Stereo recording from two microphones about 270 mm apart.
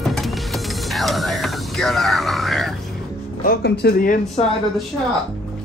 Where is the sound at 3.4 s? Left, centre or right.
Left.